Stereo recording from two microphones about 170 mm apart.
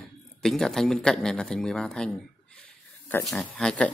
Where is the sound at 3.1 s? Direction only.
5° left (ahead or behind).